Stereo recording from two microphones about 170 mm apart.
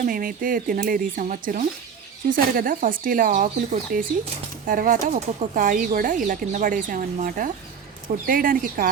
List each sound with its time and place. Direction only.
0.0 s speech: 55° right (ahead or behind)